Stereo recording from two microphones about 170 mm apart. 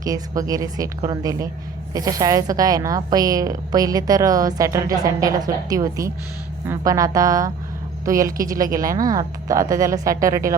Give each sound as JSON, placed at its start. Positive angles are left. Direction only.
{"t": 0.0, "sound": "a woman's voice", "side_deg": -20}
{"t": 8.4, "sound": "speech", "side_deg": -55}
{"t": 8.8, "sound": "a woman's voice", "side_deg": -20}